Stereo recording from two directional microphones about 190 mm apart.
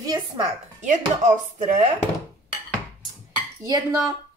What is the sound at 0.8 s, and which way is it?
Chopping, 40° right (ahead or behind).